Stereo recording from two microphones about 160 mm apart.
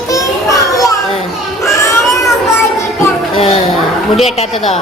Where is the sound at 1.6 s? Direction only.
20° left (ahead or behind).